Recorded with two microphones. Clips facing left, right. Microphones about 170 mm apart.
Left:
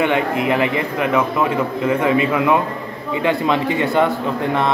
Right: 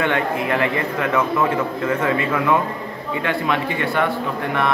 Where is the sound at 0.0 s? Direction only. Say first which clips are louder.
Left 3 dB; 20° left (ahead or behind).